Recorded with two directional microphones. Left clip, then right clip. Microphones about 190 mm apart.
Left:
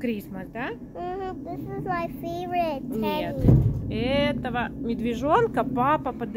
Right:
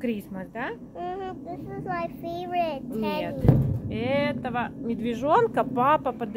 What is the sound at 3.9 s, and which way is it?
Speech, centre (ahead or behind).